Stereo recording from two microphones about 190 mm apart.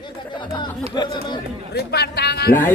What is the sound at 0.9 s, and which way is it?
Speech, 25° left (ahead or behind).